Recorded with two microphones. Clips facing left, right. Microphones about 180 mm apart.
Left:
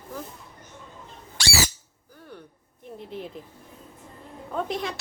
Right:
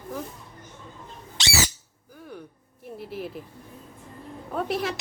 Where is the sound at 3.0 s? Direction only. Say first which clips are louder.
Right 2 dB; 5° right (ahead or behind).